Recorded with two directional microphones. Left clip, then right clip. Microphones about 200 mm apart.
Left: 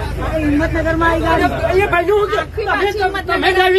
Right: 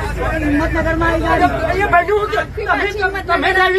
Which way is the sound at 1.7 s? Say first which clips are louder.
Even; 45° left (ahead or behind).